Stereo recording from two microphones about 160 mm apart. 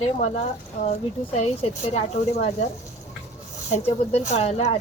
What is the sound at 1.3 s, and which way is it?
Speech, 40° left (ahead or behind).